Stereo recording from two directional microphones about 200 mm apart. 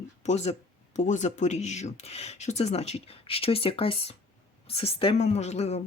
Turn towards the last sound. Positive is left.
turn(degrees=35)  # may be behind; listen again after turning